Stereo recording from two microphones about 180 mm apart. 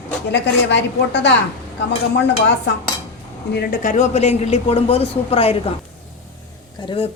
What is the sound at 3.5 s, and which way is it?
A woman's voice, 60° left (ahead or behind).